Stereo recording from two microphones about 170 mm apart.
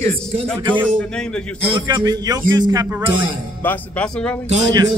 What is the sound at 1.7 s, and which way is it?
A man's voice, 25° right (ahead or behind).